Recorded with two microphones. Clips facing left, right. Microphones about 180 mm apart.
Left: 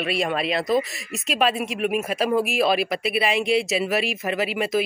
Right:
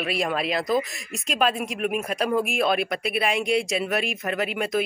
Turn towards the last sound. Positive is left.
turn(degrees=5)  # may be behind; listen again after turning